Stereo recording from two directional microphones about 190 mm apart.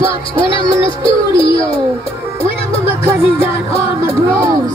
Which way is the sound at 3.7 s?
30° left (ahead or behind).